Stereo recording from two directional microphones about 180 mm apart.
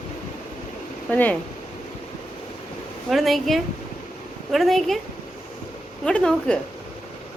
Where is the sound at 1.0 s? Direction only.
10° left (ahead or behind).